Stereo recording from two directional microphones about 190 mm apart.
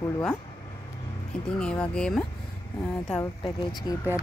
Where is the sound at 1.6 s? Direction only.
5° left (ahead or behind).